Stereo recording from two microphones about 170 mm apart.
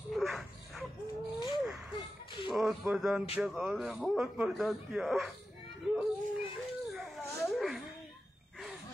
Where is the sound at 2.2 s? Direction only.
30° left (ahead or behind).